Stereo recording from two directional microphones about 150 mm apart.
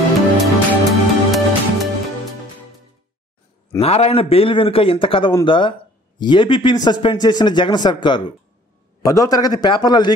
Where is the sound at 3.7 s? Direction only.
40° left (ahead or behind).